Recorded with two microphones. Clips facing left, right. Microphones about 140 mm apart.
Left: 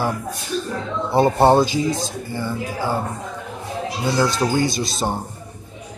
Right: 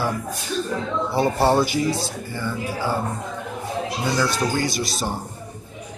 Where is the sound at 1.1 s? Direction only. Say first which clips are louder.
Left 5 dB; 20° left (ahead or behind).